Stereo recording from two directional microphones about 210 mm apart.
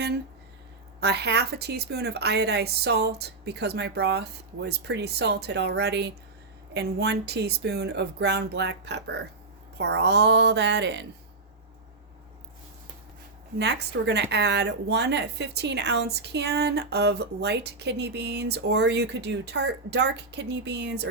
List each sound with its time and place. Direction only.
0.9 s a woman's voice: 50° right (ahead or behind)
13.6 s a woman's voice: 55° right (ahead or behind)